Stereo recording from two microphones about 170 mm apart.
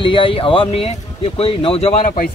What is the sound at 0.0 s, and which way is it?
Speech, 30° left (ahead or behind).